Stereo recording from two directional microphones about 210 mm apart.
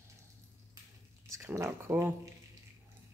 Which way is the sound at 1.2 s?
15° right (ahead or behind).